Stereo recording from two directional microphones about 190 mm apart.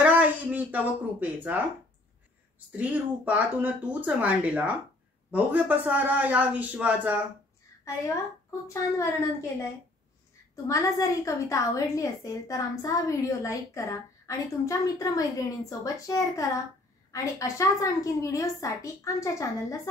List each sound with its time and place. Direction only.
0.0 s a sound: 10° right (ahead or behind)
2.8 s speech: 10° right (ahead or behind)
8.6 s a woman's voice: 15° left (ahead or behind)
10.5 s a woman's voice: 15° left (ahead or behind)